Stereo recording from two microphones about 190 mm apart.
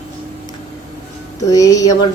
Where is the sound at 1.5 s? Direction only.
20° left (ahead or behind).